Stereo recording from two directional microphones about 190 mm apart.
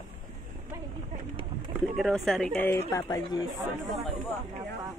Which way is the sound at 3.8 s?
Centre (ahead or behind).